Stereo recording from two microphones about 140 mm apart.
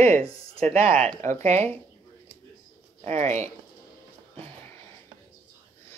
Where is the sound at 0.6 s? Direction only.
45° right (ahead or behind).